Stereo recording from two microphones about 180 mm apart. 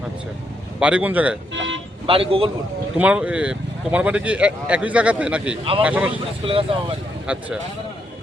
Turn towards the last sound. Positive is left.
turn(degrees=-5)  # may be behind; listen again after turning